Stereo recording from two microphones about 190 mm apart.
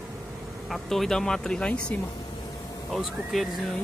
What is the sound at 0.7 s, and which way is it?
Speech, centre (ahead or behind).